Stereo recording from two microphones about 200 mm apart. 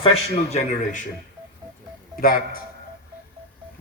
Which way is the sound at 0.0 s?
30° left (ahead or behind).